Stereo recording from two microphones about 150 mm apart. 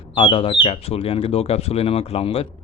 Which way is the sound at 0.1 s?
35° left (ahead or behind).